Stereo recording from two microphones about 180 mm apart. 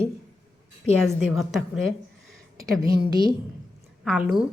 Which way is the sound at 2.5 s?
20° right (ahead or behind).